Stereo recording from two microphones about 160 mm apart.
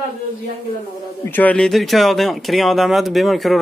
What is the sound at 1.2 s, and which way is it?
Speech, 10° left (ahead or behind).